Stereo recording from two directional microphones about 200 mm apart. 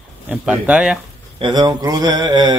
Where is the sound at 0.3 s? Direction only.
5° right (ahead or behind).